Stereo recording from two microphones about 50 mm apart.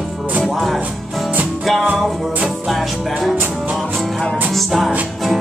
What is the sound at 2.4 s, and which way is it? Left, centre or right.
Music, centre.